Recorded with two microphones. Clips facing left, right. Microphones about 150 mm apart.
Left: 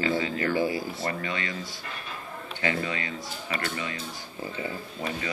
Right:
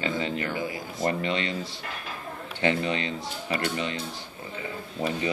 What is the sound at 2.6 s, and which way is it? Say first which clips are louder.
Speech: right 4 dB; 25° right (ahead or behind).